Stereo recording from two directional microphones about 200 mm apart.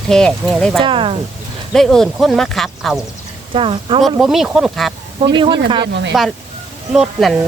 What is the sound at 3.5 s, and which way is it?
Speech, 25° right (ahead or behind).